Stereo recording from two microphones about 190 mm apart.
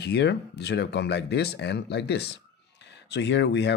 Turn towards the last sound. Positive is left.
turn(degrees=65)  # may be behind; listen again after turning